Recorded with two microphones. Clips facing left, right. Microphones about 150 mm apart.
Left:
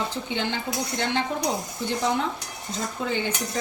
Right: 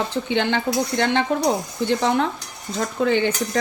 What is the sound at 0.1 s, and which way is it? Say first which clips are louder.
Speech: right 7 dB; 75° right (ahead or behind).